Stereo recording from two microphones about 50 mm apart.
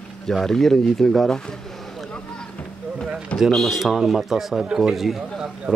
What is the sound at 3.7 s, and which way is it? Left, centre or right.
Speech, centre.